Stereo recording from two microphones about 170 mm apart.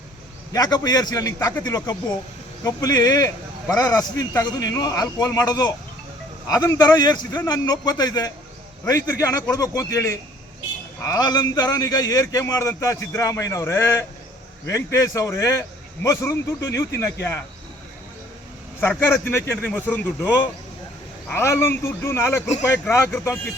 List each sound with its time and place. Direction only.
0.5 s a man's voice: 25° left (ahead or behind)
18.8 s a man's voice: 15° left (ahead or behind)